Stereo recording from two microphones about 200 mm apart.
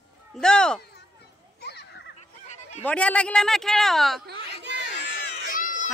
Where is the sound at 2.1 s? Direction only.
35° left (ahead or behind).